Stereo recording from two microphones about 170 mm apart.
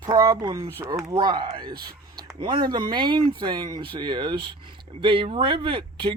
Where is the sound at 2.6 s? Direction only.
25° right (ahead or behind).